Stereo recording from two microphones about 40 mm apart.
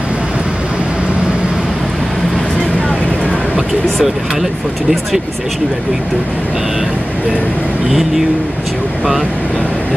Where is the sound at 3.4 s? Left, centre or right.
Centre.